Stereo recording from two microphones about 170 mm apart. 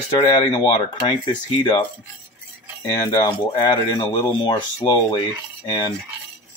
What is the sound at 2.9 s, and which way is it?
Speech, 25° left (ahead or behind).